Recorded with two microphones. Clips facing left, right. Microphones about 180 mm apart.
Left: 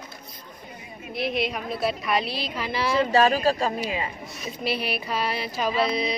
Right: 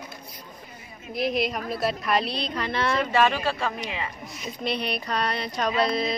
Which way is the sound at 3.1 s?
35° left (ahead or behind).